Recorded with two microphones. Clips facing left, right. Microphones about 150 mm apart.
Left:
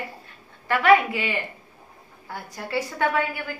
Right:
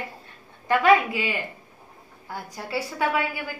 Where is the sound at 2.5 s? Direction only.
10° right (ahead or behind).